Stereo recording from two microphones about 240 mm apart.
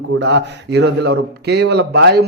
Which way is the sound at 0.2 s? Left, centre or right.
Right.